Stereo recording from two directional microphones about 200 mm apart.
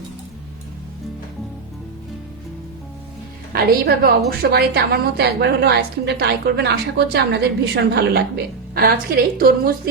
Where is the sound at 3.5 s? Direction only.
50° right (ahead or behind).